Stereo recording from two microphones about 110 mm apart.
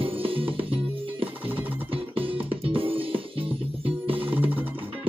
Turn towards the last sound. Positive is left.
turn(degrees=-15)  # may be behind; listen again after turning